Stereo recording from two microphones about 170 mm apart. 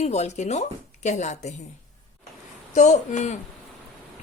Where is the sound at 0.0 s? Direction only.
40° left (ahead or behind).